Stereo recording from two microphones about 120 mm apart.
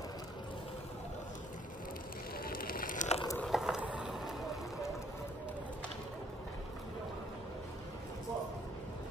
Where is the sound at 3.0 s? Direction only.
90° left.